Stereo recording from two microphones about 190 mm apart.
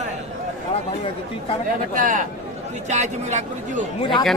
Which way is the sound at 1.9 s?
45° right (ahead or behind).